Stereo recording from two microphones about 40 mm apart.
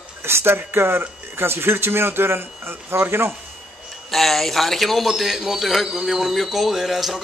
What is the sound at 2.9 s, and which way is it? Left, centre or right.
Speech, right.